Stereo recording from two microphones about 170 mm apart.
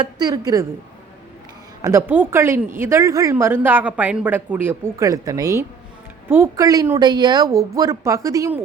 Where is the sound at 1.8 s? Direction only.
15° right (ahead or behind).